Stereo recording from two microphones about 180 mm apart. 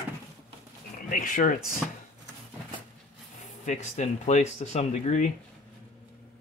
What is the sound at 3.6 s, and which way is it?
Speech, 40° left (ahead or behind).